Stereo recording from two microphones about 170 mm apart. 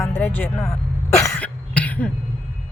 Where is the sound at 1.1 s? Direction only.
15° left (ahead or behind).